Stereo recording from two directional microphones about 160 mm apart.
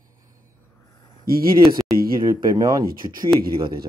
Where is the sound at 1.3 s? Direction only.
65° right (ahead or behind).